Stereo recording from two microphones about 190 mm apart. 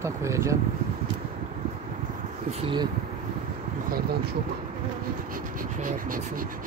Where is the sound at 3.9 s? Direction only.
55° right (ahead or behind).